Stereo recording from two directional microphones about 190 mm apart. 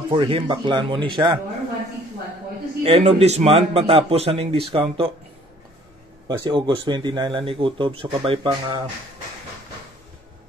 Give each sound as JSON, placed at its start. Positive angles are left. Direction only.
{"t": 0.1, "sound": "speech", "side_deg": -25}
{"t": 2.8, "sound": "a man's voice", "side_deg": -30}
{"t": 6.2, "sound": "speech", "side_deg": -25}